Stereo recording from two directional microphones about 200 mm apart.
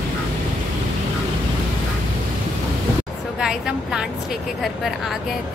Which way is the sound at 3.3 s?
5° right (ahead or behind).